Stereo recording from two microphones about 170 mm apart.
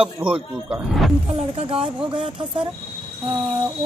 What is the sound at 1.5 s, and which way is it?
Speech, 35° right (ahead or behind).